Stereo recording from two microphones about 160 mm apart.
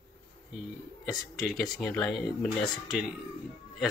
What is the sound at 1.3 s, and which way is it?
Speech, centre (ahead or behind).